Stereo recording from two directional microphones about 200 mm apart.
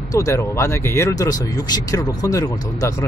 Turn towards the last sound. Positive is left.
turn(degrees=15)  # may be behind; listen again after turning